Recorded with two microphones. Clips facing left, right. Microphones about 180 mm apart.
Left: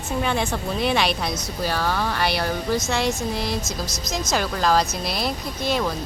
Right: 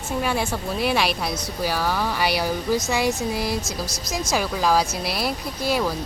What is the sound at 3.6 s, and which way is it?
Speech, 35° right (ahead or behind).